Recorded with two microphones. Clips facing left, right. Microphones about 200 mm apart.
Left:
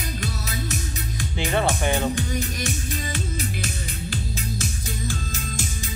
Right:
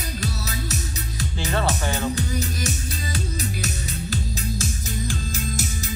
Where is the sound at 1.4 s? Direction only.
15° left (ahead or behind).